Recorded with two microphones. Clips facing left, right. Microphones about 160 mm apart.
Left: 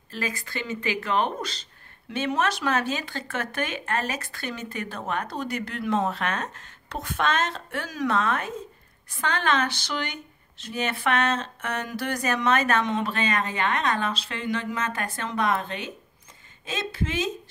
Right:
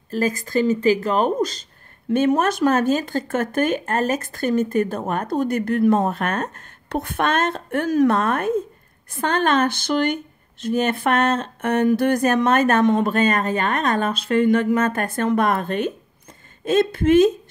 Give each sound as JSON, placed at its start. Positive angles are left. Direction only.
{"t": 0.1, "sound": "speech", "side_deg": -45}